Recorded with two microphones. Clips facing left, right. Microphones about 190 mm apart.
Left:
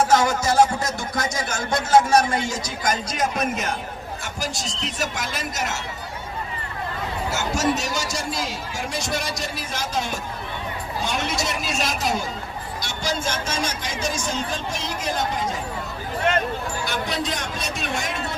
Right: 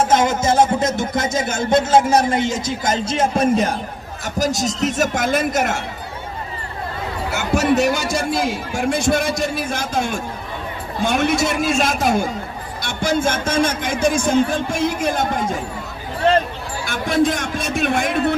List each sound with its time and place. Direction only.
0.0 s a man's voice: 20° right (ahead or behind)
4.4 s speech: 40° right (ahead or behind)
7.3 s speech: 60° right (ahead or behind)
16.8 s speech: 50° right (ahead or behind)